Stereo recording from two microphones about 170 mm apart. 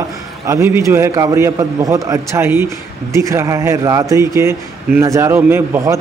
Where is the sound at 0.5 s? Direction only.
15° right (ahead or behind).